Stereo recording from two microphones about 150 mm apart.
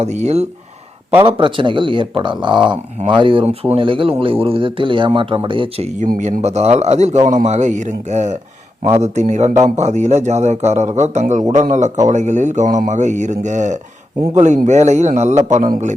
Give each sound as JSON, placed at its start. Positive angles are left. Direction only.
{"t": 0.0, "sound": "a man's voice", "side_deg": -50}
{"t": 1.3, "sound": "a man's voice", "side_deg": -35}
{"t": 15.5, "sound": "a man's voice", "side_deg": -60}